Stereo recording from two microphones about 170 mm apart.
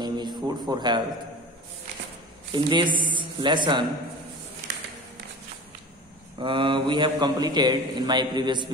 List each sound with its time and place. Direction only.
0.0 s a sound: 25° right (ahead or behind)
2.5 s a man's voice: 30° right (ahead or behind)
6.4 s a man's voice: 30° right (ahead or behind)